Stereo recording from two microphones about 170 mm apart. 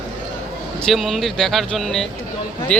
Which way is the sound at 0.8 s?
Centre (ahead or behind).